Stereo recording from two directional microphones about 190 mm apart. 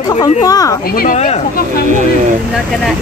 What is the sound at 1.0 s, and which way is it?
Speech, 40° left (ahead or behind).